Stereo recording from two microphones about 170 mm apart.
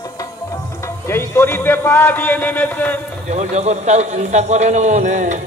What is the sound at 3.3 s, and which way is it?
A man's voice, 40° right (ahead or behind).